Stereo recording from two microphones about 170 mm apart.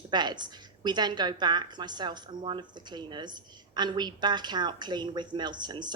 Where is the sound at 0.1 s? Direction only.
25° right (ahead or behind).